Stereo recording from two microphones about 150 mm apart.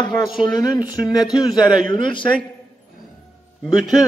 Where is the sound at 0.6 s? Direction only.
25° left (ahead or behind).